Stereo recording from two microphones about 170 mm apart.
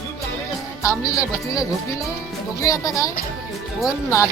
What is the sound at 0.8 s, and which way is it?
A woman's voice, 15° left (ahead or behind).